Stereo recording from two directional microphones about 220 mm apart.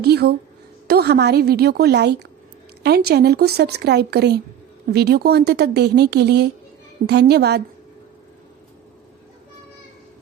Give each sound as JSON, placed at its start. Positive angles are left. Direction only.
{"t": 0.0, "sound": "a woman's voice", "side_deg": -45}